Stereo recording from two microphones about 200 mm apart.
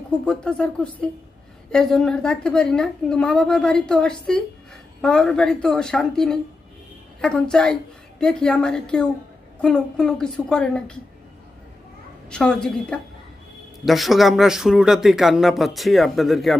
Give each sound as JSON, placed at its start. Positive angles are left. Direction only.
{"t": 0.2, "sound": "speech", "side_deg": 5}
{"t": 12.3, "sound": "speech", "side_deg": 5}